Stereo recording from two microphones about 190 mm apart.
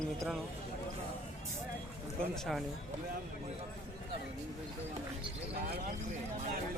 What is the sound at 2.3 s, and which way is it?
Speech, centre (ahead or behind).